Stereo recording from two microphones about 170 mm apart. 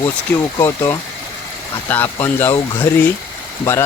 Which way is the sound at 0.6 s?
15° left (ahead or behind).